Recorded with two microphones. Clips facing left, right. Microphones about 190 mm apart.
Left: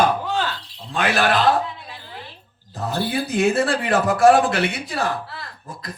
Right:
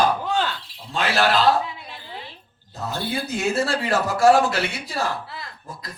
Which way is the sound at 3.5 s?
55° left (ahead or behind).